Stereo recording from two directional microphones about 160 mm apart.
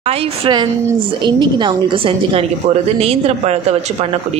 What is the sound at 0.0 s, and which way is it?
A woman's voice, 40° right (ahead or behind).